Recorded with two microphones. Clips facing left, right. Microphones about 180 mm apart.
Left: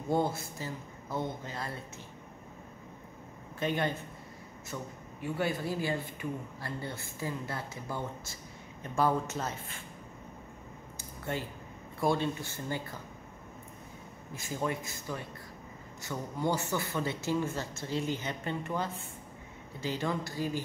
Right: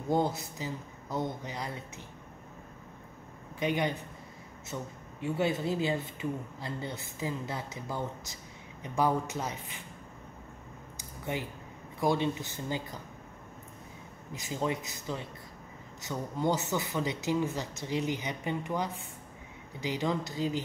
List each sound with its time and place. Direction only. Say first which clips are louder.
0.1 s speech: right 1 dB; 20° right (ahead or behind)
3.5 s speech: right 1 dB; 15° right (ahead or behind)
11.0 s a sound: right 1 dB; 15° right (ahead or behind)
12.0 s speech: right 1 dB; 20° right (ahead or behind)
14.3 s speech: right 1 dB; 20° right (ahead or behind)